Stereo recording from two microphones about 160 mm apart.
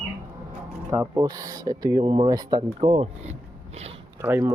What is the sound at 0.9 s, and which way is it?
Speech, 15° right (ahead or behind).